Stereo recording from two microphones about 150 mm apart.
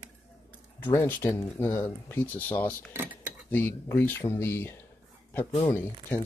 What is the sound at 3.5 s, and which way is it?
Speech, 10° left (ahead or behind).